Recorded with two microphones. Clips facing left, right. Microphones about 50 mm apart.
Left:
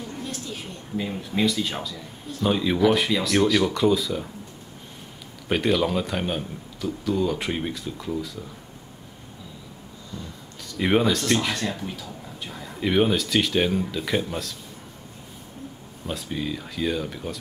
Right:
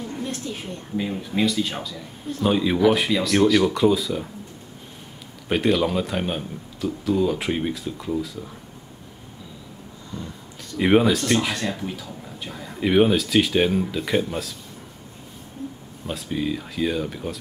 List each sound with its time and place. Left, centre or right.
0.9 s speech: centre
5.5 s speech: centre
10.8 s speech: centre
16.1 s speech: centre